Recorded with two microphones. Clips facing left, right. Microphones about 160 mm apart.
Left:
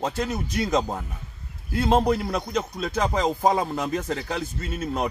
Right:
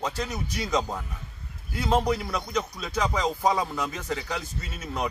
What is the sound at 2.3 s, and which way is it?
Speech, 50° left (ahead or behind).